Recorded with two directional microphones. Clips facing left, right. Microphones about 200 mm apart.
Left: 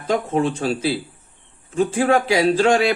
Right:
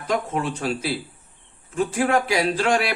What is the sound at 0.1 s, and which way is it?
A man's voice, 30° left (ahead or behind).